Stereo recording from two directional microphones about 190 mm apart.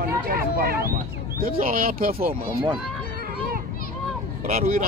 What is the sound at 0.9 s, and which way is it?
Speech, 50° right (ahead or behind).